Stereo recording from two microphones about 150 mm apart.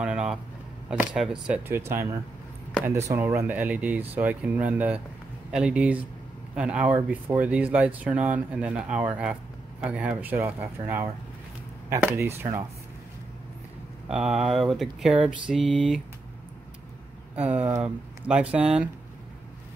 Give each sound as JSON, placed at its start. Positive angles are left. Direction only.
{"t": 0.0, "sound": "a sound", "side_deg": -5}
{"t": 0.8, "sound": "mantra", "side_deg": -5}
{"t": 1.9, "sound": "speech", "side_deg": -15}
{"t": 14.0, "sound": "mantra", "side_deg": -5}
{"t": 17.5, "sound": "speech", "side_deg": -10}